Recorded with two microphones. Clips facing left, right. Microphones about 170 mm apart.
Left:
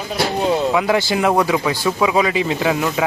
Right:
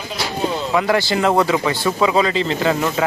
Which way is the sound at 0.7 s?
15° left (ahead or behind).